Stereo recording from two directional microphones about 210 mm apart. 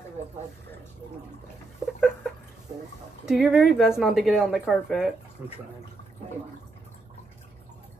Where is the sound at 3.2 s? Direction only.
Centre (ahead or behind).